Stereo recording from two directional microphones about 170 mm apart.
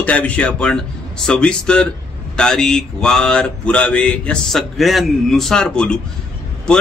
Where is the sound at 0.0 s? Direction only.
5° left (ahead or behind).